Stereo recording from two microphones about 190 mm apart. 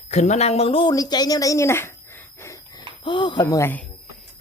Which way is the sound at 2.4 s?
20° left (ahead or behind).